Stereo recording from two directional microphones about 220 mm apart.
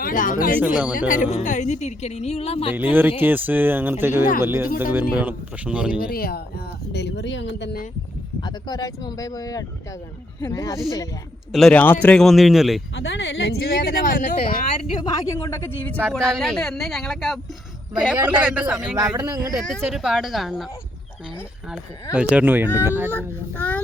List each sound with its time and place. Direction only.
0.0 s speech: 40° left (ahead or behind)
2.7 s a man's voice: 10° right (ahead or behind)
6.0 s speech: 40° left (ahead or behind)
8.4 s speech: 20° left (ahead or behind)
11.5 s a man's voice: 5° left (ahead or behind)
12.9 s a man's voice: 55° left (ahead or behind); by 18.9 s 5° right (ahead or behind)
19.1 s speech: 15° right (ahead or behind)
19.5 s a man's voice: centre (ahead or behind)
22.1 s speech: 5° right (ahead or behind)
23.1 s speech: 5° left (ahead or behind)